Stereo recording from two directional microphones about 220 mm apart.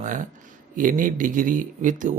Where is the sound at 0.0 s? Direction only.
35° right (ahead or behind).